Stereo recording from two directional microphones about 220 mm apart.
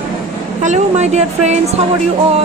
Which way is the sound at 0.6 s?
30° right (ahead or behind).